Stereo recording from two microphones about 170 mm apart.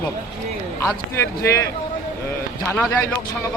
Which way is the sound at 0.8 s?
15° left (ahead or behind).